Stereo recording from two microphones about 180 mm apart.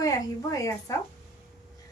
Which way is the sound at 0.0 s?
20° left (ahead or behind).